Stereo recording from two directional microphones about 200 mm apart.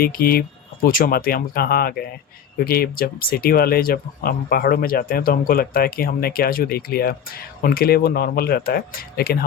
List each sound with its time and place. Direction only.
0.0 s speech: 50° left (ahead or behind)